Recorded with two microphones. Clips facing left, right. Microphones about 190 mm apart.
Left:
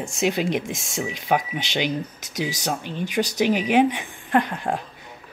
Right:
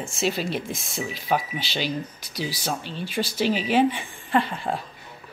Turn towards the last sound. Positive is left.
turn(degrees=15)  # may be behind; listen again after turning